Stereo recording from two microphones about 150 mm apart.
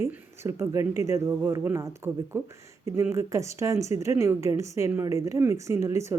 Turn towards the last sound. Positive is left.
turn(degrees=-20)  # may be behind; listen again after turning